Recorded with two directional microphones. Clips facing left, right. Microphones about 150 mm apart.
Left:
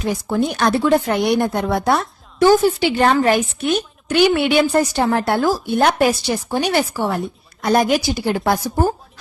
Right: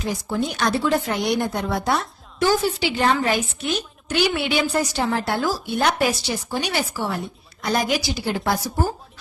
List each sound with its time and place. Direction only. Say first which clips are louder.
0.0 s speech: left 5 dB; 55° left (ahead or behind)